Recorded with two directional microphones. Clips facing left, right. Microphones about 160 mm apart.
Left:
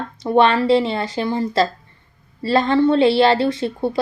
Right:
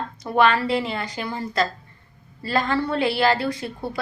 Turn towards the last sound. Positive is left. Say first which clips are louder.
# left 7 dB
turn(degrees=25)  # may be behind; listen again after turning